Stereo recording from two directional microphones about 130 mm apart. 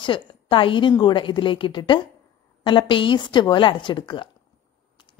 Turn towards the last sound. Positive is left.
turn(degrees=40)  # may be behind; listen again after turning